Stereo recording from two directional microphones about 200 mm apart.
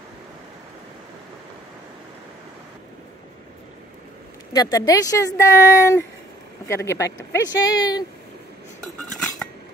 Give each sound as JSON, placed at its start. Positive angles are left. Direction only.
{"t": 4.5, "sound": "speech", "side_deg": 15}
{"t": 8.8, "sound": "cutlery", "side_deg": 0}